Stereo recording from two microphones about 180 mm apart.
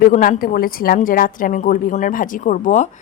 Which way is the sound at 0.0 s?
50° left (ahead or behind).